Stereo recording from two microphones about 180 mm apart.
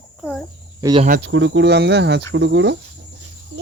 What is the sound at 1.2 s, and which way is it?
Speech, 80° right.